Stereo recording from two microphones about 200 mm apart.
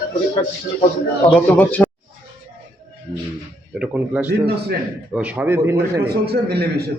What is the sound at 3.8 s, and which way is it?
A man's voice, 10° right (ahead or behind).